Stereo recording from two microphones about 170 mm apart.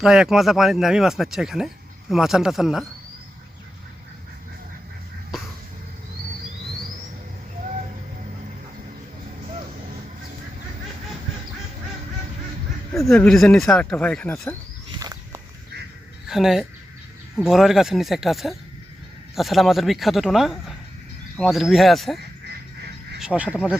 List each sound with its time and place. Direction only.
0.0 s speech: centre (ahead or behind)
13.1 s speech: centre (ahead or behind)
14.9 s a sound: 20° right (ahead or behind)
16.2 s speech: centre (ahead or behind)
23.2 s speech: 5° right (ahead or behind)